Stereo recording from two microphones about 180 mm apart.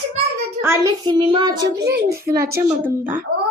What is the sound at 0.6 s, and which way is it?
Speech, 15° right (ahead or behind).